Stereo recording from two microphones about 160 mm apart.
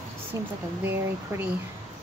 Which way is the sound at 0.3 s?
20° right (ahead or behind).